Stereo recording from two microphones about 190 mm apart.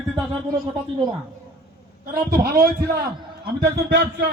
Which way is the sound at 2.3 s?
55° right (ahead or behind).